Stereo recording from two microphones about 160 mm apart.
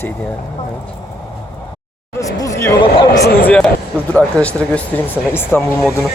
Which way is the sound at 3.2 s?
85° left.